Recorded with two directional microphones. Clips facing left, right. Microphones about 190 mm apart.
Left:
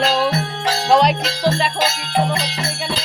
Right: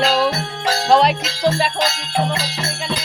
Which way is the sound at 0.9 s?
Centre (ahead or behind).